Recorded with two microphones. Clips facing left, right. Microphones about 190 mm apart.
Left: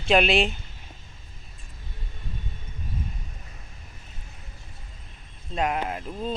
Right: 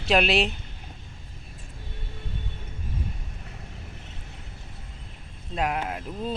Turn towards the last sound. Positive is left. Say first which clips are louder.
# left 1 dB
turn(degrees=-5)  # may be behind; listen again after turning